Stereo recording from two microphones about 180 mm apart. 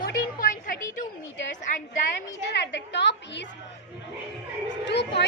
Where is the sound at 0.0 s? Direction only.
50° left (ahead or behind).